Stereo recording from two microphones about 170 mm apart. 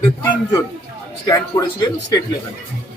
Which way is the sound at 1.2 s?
20° left (ahead or behind).